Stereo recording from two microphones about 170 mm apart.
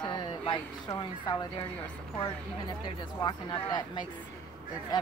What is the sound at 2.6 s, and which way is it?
Speech, 25° left (ahead or behind).